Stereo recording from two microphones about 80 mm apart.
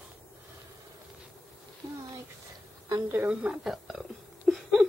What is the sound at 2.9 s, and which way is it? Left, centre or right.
Speech, right.